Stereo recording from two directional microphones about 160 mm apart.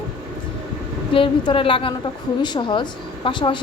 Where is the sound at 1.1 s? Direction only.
30° left (ahead or behind).